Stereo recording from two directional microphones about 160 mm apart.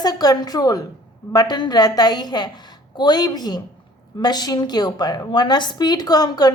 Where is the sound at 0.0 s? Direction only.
25° left (ahead or behind).